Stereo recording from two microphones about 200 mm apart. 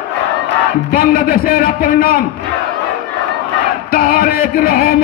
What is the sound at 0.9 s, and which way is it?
A man's voice, 45° left (ahead or behind).